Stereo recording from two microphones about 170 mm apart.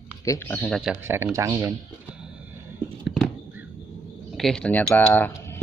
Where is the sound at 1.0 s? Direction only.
15° right (ahead or behind).